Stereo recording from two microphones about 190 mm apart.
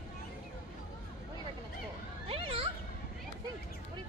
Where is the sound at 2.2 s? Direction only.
30° right (ahead or behind).